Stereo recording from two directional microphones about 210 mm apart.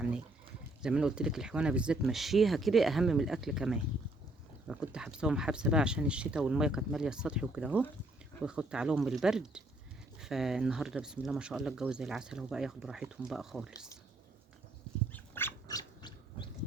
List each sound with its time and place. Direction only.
0.8 s speech: 5° right (ahead or behind)
15.1 s dog: 10° left (ahead or behind)